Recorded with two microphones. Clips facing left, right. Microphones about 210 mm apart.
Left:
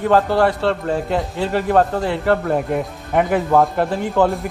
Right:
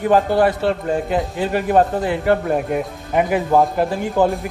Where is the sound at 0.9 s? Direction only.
Centre (ahead or behind).